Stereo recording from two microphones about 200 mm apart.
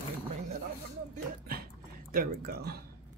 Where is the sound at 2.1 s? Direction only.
50° right (ahead or behind).